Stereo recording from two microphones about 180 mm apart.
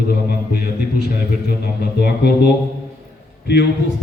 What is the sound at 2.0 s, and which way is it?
Speech, 65° left (ahead or behind).